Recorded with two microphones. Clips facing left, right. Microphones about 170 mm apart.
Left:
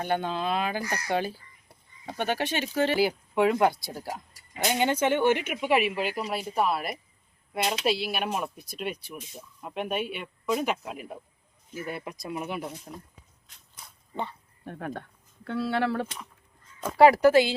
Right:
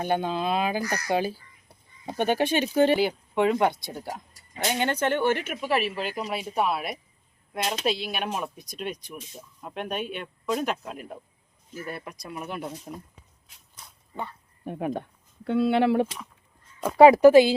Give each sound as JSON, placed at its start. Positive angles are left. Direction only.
{"t": 0.0, "sound": "speech", "side_deg": -15}
{"t": 3.0, "sound": "speech", "side_deg": 5}
{"t": 12.9, "sound": "speech", "side_deg": -5}
{"t": 14.6, "sound": "speech", "side_deg": -15}